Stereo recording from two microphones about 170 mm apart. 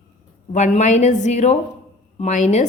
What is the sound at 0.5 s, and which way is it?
A woman's voice, 45° left (ahead or behind).